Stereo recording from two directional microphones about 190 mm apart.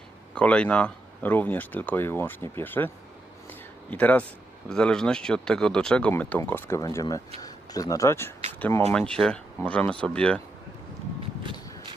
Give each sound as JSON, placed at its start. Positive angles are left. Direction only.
{"t": 0.3, "sound": "speech", "side_deg": 5}